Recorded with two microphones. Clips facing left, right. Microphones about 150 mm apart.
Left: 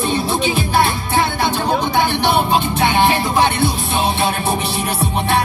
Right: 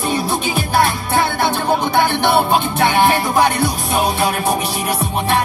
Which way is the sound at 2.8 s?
20° left (ahead or behind).